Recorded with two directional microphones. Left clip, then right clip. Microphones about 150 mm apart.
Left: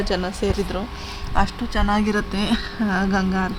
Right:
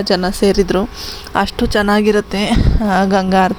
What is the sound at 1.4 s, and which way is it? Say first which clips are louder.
A woman's voice: right 8 dB; 60° right (ahead or behind).